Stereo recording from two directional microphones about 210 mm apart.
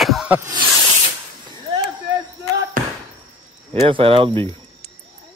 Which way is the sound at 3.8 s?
25° right (ahead or behind).